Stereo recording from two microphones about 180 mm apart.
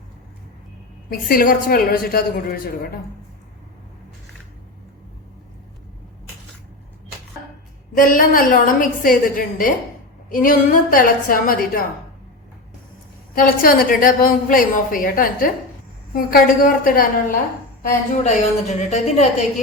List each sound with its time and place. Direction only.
1.3 s a woman's voice: 55° left (ahead or behind)
7.9 s a woman's voice: 50° left (ahead or behind)
13.3 s a woman's voice: 55° left (ahead or behind)
18.1 s a woman's voice: 40° left (ahead or behind)